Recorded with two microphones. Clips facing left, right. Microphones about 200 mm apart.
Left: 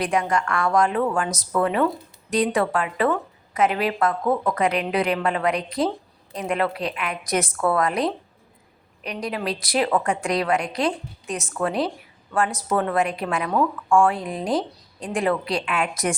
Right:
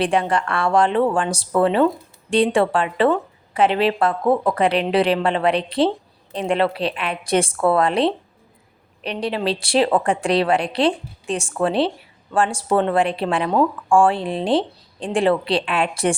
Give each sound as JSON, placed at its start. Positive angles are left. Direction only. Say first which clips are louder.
{"t": 0.0, "sound": "speech", "louder": "right 3 dB", "side_deg": -30}